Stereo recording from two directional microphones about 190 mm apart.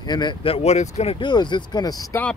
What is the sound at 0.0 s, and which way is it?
Speech, 20° left (ahead or behind).